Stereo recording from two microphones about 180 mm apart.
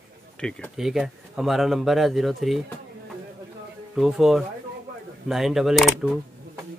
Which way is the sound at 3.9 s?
Centre (ahead or behind).